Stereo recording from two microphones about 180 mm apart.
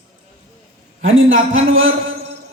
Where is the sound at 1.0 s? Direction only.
90° right.